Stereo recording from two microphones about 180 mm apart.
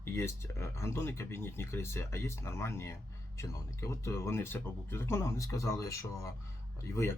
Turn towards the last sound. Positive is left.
turn(degrees=15)  # may be behind; listen again after turning